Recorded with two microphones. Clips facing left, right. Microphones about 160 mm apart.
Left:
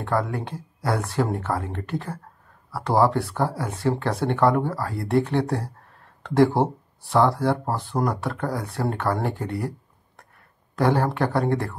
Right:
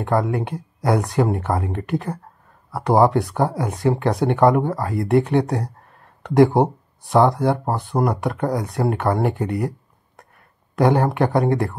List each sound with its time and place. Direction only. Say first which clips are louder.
0.0 s speech: right 5 dB; 15° right (ahead or behind)
10.8 s speech: right 4 dB; 15° right (ahead or behind)